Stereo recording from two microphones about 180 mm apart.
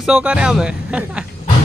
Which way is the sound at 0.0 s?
5° right (ahead or behind).